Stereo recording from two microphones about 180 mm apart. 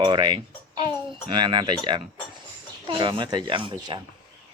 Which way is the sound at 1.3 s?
25° right (ahead or behind).